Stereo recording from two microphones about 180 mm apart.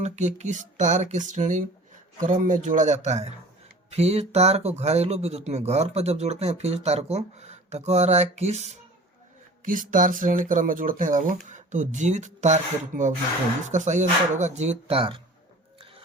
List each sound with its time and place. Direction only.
0.0 s speech: 40° right (ahead or behind)